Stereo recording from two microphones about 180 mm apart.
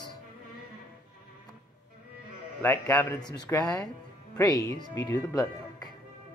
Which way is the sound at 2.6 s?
10° left (ahead or behind).